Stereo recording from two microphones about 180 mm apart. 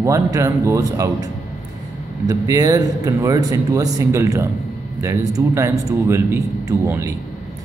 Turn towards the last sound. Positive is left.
turn(degrees=-15)  # may be behind; listen again after turning